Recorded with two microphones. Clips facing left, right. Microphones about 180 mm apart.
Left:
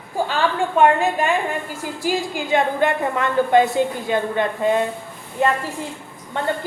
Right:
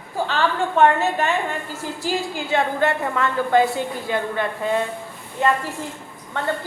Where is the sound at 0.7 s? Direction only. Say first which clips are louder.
Left 1 dB; 15° left (ahead or behind).